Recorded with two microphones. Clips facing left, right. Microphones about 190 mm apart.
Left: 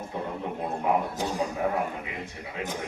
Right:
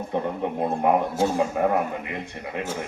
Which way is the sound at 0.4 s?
65° right (ahead or behind).